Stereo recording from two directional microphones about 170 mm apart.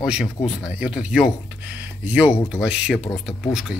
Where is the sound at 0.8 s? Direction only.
5° right (ahead or behind).